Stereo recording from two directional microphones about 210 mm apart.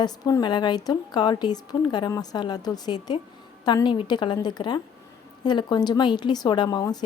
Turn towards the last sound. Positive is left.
turn(degrees=20)  # may be behind; listen again after turning